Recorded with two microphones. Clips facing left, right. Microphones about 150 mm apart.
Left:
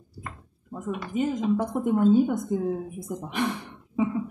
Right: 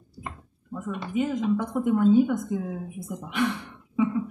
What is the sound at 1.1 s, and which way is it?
Speech, 35° left (ahead or behind).